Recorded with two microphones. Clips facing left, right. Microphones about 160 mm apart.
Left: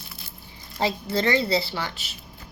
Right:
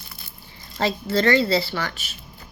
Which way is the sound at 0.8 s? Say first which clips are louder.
Right 3 dB; 20° left (ahead or behind).